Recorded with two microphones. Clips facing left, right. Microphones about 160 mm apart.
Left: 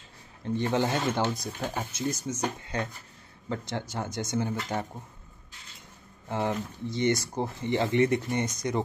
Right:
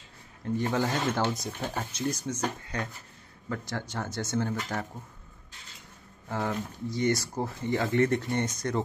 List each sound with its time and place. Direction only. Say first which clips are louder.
0.7 s speech: left 2 dB; 20° left (ahead or behind)
1.3 s speech: left 1 dB; centre (ahead or behind)
1.7 s speech: even; 10° left (ahead or behind)
2.7 s speech: left 2 dB; 30° left (ahead or behind)
6.2 s speech: left 2 dB; 20° left (ahead or behind)